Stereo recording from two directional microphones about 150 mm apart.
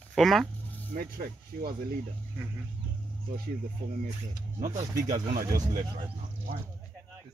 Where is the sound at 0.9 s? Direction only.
75° right (ahead or behind).